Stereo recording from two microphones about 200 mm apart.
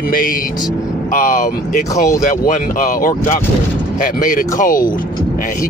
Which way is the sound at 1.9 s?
15° left (ahead or behind).